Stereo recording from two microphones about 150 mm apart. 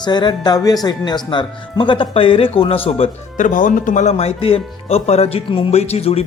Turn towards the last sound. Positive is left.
turn(degrees=45)  # may be behind; listen again after turning